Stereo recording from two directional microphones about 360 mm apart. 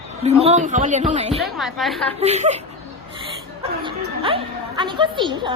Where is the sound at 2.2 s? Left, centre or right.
Centre.